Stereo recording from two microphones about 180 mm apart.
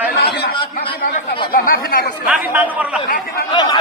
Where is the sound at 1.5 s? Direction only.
55° left (ahead or behind).